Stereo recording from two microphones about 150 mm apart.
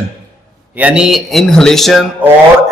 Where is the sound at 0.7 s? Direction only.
10° right (ahead or behind).